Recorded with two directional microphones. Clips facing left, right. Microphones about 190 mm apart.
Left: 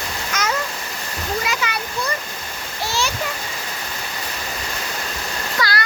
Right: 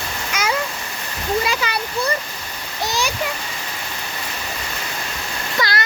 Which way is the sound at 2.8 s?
15° right (ahead or behind).